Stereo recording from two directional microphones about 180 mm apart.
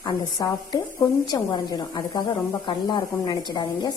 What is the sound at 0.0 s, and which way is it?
A woman's voice, 25° left (ahead or behind).